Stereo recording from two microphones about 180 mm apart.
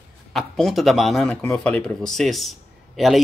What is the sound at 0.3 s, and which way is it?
Speech, centre (ahead or behind).